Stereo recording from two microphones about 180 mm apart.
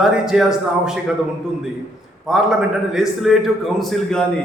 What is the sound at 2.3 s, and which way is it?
Speech, centre (ahead or behind).